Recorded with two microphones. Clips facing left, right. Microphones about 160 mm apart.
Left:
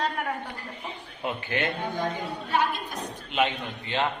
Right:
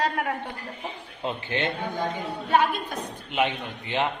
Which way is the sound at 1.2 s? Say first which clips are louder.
Right 1 dB; 25° right (ahead or behind).